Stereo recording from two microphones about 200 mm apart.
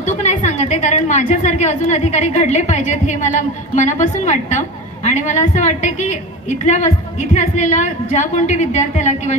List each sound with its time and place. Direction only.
0.0 s a woman's voice: 35° left (ahead or behind)